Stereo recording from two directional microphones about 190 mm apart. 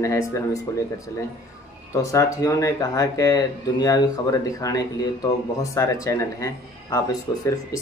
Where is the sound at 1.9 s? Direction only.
15° left (ahead or behind).